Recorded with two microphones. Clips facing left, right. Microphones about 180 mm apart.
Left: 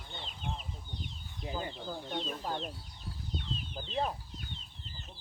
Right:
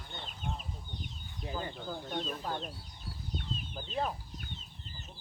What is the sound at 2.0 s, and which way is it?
Speech, 5° right (ahead or behind).